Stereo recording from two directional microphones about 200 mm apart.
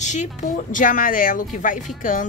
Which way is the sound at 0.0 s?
35° left (ahead or behind).